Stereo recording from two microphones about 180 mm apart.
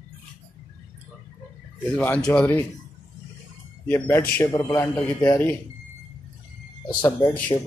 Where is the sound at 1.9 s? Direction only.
5° left (ahead or behind).